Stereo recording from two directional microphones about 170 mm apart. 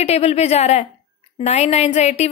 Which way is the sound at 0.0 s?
40° left (ahead or behind).